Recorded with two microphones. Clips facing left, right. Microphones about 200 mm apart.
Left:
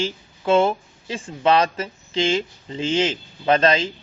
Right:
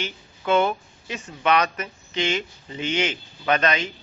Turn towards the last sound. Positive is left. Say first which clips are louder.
# left 4 dB
turn(degrees=30)  # may be behind; listen again after turning